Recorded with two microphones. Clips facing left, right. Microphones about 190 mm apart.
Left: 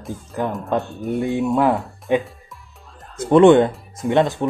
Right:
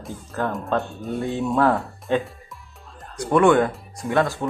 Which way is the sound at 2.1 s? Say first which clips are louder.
Left 3 dB; 15° left (ahead or behind).